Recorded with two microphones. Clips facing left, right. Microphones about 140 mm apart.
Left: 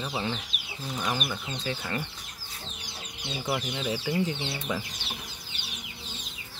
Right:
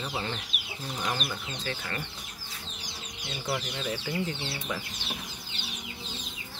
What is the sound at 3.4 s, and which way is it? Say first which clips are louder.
Speech: left 2 dB; 15° left (ahead or behind).